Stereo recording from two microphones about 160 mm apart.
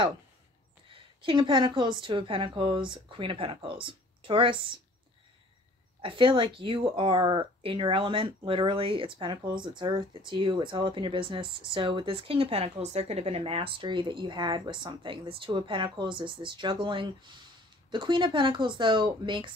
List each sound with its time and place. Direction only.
0.8 s speech: 30° right (ahead or behind)
5.9 s speech: 30° right (ahead or behind)